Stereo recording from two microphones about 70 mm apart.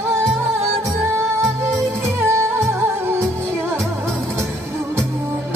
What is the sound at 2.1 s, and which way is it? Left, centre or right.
Music, right.